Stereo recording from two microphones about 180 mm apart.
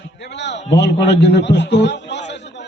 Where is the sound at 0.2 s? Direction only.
75° left (ahead or behind).